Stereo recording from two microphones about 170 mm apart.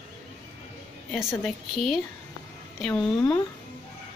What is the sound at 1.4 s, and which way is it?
Speech, centre (ahead or behind).